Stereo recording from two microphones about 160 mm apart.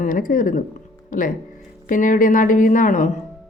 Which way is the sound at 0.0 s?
60° left (ahead or behind).